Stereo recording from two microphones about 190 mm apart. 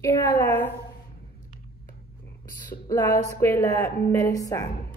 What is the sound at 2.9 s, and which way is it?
A woman's voice, 15° left (ahead or behind).